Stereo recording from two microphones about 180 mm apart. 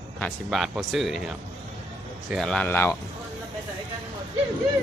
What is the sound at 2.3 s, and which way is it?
Speech, centre (ahead or behind).